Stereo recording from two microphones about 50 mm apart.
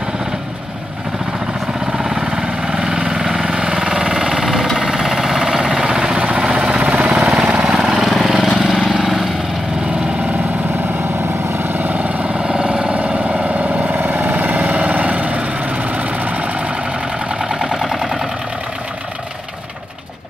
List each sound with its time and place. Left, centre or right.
1.9 s vehicle: centre
4.7 s a sound: centre
7.2 s vehicle: centre
11.5 s vehicle: right
17.4 s vehicle: centre